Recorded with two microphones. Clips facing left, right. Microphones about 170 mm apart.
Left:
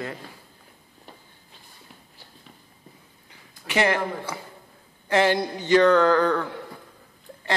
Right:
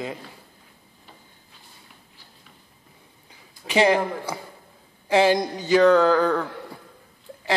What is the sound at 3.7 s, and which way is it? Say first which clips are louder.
A man's voice: right 4 dB; 15° right (ahead or behind).